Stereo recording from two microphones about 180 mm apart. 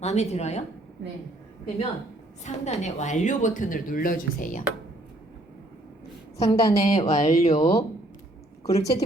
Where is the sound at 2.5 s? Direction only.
40° left (ahead or behind).